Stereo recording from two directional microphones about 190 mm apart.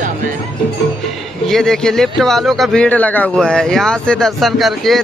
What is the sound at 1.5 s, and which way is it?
Speech, centre (ahead or behind).